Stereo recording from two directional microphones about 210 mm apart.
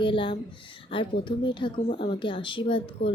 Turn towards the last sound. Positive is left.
turn(degrees=25)  # may be behind; listen again after turning